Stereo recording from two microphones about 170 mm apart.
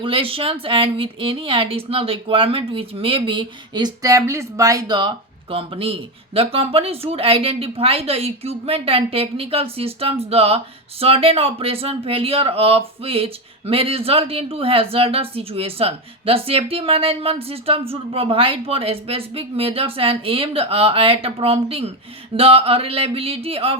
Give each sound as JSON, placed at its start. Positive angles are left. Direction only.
{"t": 0.0, "sound": "speech", "side_deg": -30}